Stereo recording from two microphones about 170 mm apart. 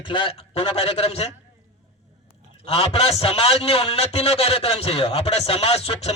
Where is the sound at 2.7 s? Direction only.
35° left (ahead or behind).